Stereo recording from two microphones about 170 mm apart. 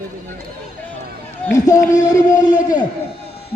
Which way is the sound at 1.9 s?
45° left (ahead or behind).